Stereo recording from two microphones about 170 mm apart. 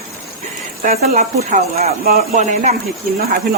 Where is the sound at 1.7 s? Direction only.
60° right (ahead or behind).